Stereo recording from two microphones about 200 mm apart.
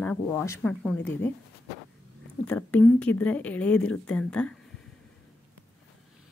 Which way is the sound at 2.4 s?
5° left (ahead or behind).